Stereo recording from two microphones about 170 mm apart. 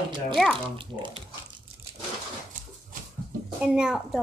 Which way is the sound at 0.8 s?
30° right (ahead or behind).